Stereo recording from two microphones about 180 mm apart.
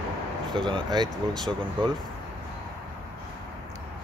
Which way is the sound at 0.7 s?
20° right (ahead or behind).